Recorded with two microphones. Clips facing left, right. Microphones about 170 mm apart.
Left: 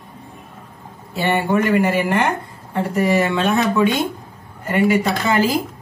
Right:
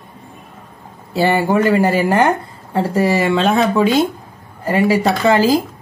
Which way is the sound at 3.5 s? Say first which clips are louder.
Right 3 dB; 30° right (ahead or behind).